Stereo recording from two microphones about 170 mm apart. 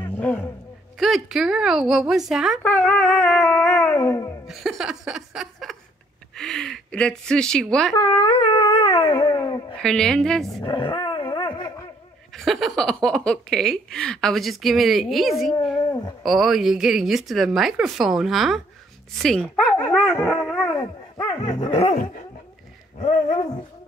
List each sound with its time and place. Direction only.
0.0 s roaring cats: 10° left (ahead or behind)
0.9 s speech: centre (ahead or behind)
2.6 s a sound: 10° left (ahead or behind)
4.5 s laughter: centre (ahead or behind)
6.3 s a woman's voice: 5° left (ahead or behind)
7.9 s a sound: 25° left (ahead or behind)
9.8 s speech: 5° left (ahead or behind)
10.6 s dog: 30° left (ahead or behind)
12.4 s speech: centre (ahead or behind)
19.2 s dog: 5° left (ahead or behind)
20.3 s dog: 15° left (ahead or behind)
21.2 s dog: 25° left (ahead or behind)